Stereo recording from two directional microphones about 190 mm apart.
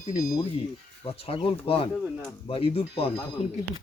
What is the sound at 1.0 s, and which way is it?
Speech, 30° left (ahead or behind).